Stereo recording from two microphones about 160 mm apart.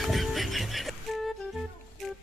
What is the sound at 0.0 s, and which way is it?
Music, centre (ahead or behind).